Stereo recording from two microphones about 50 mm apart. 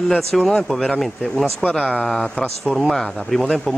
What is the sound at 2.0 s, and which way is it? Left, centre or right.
Speech, centre.